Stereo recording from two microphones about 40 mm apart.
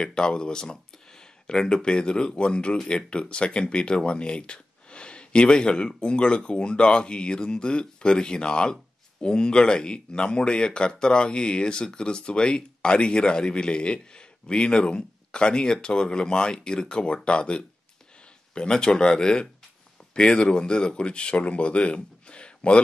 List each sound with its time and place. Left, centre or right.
0.0 s speech: left